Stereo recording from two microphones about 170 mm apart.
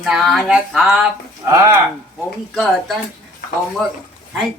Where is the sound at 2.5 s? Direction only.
Centre (ahead or behind).